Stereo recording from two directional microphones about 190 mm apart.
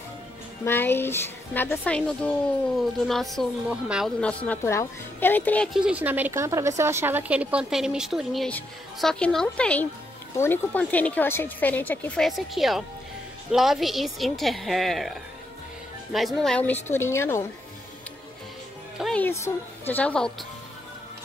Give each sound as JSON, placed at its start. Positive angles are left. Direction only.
{"t": 0.7, "sound": "a woman's voice", "side_deg": 10}
{"t": 18.9, "sound": "a woman's voice", "side_deg": 5}